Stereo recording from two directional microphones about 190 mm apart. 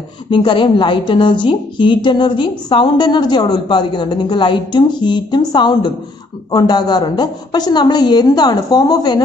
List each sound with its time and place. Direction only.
0.3 s a woman's voice: 25° left (ahead or behind)